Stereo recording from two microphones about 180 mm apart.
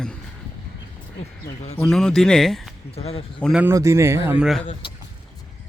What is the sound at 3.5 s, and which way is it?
Speech, 15° right (ahead or behind).